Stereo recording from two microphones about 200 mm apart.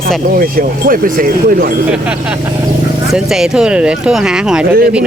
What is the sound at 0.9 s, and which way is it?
Speech, 45° right (ahead or behind).